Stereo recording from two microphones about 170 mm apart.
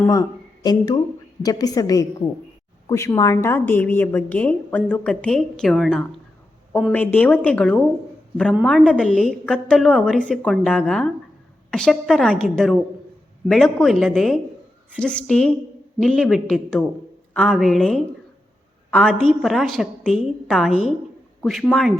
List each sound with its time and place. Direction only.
0.1 s a woman's voice: 25° left (ahead or behind); by 21.9 s 5° left (ahead or behind)